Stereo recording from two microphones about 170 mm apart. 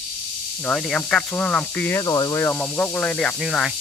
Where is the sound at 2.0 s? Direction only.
25° left (ahead or behind).